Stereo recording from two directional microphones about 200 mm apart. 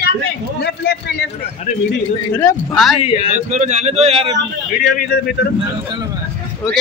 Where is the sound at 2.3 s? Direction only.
10° left (ahead or behind).